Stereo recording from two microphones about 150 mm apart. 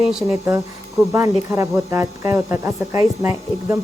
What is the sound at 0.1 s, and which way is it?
Speech, 5° right (ahead or behind).